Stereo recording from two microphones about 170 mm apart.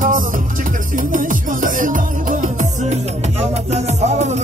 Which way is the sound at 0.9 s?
50° right (ahead or behind).